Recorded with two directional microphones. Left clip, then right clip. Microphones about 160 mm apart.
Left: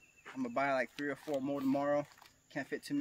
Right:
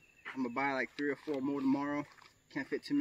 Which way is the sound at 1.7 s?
25° left (ahead or behind).